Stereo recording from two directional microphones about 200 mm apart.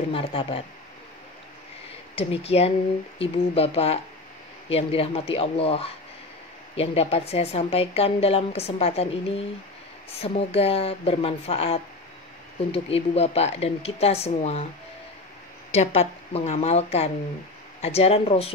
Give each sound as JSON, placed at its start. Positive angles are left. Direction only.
{"t": 0.1, "sound": "a woman's voice", "side_deg": 25}
{"t": 2.1, "sound": "a woman's voice", "side_deg": 30}
{"t": 15.7, "sound": "speech", "side_deg": 35}